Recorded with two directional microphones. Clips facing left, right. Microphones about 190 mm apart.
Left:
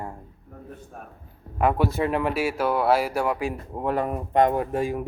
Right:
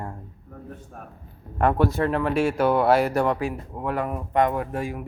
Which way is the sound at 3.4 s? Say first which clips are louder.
Left 2 dB; 30° left (ahead or behind).